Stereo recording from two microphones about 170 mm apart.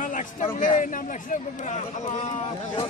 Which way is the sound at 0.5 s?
50° left (ahead or behind).